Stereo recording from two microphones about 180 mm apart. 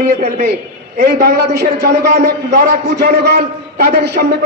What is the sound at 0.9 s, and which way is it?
A man's voice, 60° right (ahead or behind).